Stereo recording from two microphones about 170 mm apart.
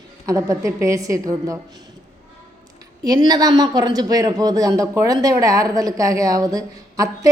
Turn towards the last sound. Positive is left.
turn(degrees=-20)  # may be behind; listen again after turning